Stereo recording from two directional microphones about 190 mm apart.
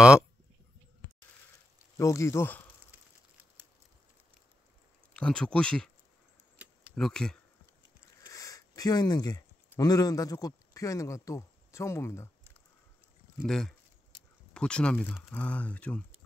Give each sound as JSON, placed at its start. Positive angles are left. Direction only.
{"t": 2.0, "sound": "speech", "side_deg": 15}
{"t": 5.1, "sound": "speech", "side_deg": 5}
{"t": 7.0, "sound": "speech", "side_deg": 5}
{"t": 8.3, "sound": "a sound", "side_deg": 15}
{"t": 9.7, "sound": "a man's voice", "side_deg": 20}
{"t": 13.4, "sound": "speech", "side_deg": 0}